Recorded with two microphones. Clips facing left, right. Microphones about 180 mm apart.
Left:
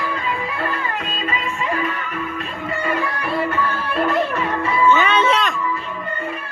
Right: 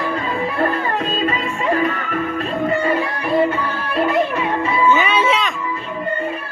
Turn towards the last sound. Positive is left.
turn(degrees=0)  # may be behind; listen again after turning